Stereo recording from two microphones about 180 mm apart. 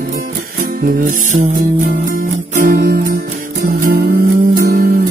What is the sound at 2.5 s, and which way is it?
Music, 50° right (ahead or behind).